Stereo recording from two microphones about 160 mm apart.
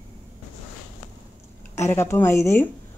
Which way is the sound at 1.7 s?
15° left (ahead or behind).